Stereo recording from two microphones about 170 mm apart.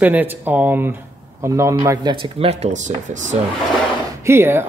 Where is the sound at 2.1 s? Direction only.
30° right (ahead or behind).